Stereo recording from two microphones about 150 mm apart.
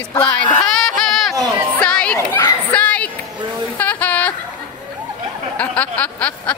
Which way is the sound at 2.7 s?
10° left (ahead or behind).